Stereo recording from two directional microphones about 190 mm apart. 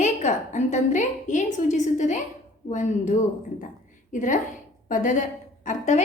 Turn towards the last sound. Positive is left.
turn(degrees=40)  # may be behind; listen again after turning